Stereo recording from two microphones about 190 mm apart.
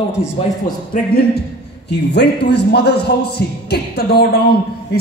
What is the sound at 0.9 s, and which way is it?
A man's voice, 50° left (ahead or behind).